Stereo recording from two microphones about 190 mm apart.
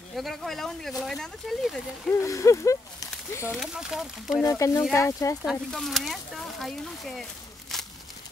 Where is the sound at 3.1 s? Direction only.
15° left (ahead or behind).